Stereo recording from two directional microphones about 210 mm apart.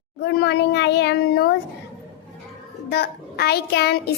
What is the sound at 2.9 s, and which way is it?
Speech, 50° left (ahead or behind).